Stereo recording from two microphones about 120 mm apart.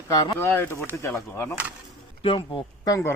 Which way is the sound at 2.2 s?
45° left (ahead or behind).